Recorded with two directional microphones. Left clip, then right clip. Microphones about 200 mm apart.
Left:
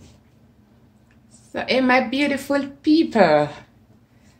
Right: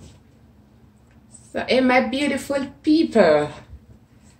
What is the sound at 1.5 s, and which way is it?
Speech, 35° left (ahead or behind).